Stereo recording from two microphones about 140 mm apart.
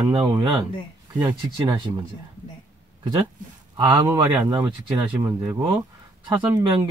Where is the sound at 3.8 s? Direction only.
25° right (ahead or behind).